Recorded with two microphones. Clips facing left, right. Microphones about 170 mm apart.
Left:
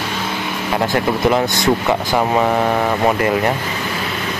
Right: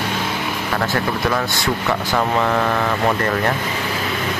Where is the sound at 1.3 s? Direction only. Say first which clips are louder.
Left 5 dB; 20° left (ahead or behind).